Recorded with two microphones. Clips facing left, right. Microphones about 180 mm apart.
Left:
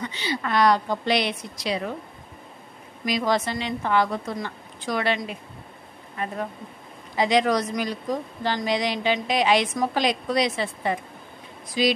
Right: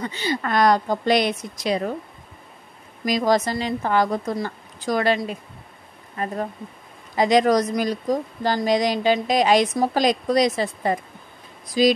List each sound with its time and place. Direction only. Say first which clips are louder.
0.0 s a woman's voice: right 3 dB; 45° right (ahead or behind)
3.1 s a woman's voice: right 4 dB; 40° right (ahead or behind)